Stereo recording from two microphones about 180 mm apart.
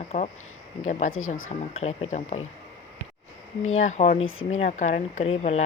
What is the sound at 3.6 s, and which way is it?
Speech, 45° left (ahead or behind).